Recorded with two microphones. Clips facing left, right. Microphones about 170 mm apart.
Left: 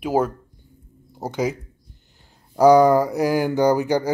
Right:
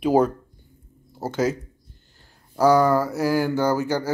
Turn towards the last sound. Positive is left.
turn(degrees=15)  # may be behind; listen again after turning